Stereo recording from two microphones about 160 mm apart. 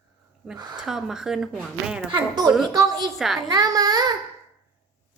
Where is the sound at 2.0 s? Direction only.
25° right (ahead or behind).